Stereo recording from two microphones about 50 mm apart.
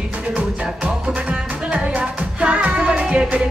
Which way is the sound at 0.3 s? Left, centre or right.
Right.